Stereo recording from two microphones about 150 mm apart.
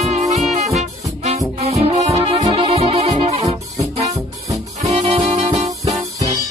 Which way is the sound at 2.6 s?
40° right (ahead or behind).